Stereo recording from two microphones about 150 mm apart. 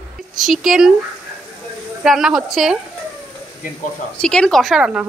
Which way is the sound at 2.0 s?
5° right (ahead or behind).